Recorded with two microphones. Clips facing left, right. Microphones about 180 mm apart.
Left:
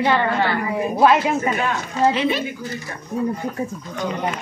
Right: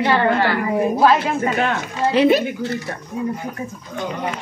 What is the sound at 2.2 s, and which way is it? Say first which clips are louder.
Speech: right 7 dB; 40° right (ahead or behind).